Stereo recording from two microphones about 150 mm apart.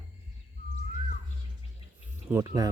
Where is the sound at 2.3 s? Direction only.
20° right (ahead or behind).